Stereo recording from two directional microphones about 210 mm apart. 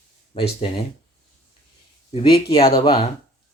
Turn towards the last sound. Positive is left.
turn(degrees=20)  # may be behind; listen again after turning